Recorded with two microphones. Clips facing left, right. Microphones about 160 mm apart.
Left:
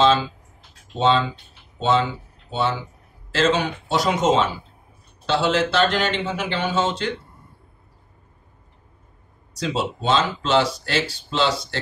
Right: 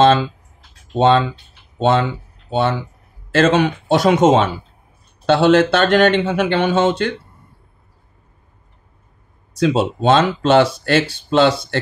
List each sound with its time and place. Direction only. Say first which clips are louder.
0.0 s a sound: right 5 dB; 55° right (ahead or behind)
0.9 s speech: right 5 dB; 55° right (ahead or behind)
9.6 s speech: right 8 dB; 55° right (ahead or behind)